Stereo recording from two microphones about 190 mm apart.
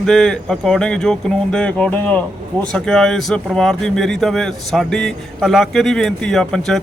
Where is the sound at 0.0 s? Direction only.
5° left (ahead or behind).